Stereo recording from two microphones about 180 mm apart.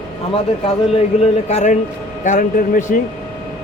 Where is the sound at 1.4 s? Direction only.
40° left (ahead or behind).